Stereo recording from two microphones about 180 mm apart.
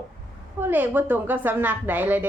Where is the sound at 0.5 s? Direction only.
10° right (ahead or behind).